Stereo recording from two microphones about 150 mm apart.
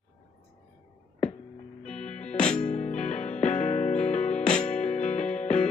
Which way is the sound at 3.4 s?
50° left (ahead or behind).